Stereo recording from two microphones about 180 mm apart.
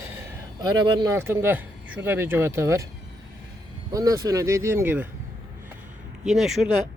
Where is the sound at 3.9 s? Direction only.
20° right (ahead or behind).